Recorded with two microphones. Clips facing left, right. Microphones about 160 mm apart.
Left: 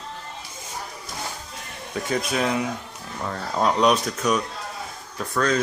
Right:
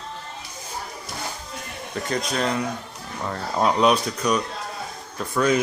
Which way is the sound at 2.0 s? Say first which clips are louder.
Left 1 dB; 5° left (ahead or behind).